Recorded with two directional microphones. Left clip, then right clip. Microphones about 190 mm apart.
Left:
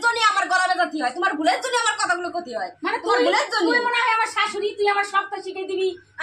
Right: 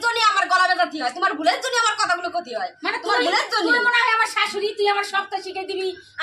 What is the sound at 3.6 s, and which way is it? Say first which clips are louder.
A woman's voice: right 4 dB; 5° right (ahead or behind).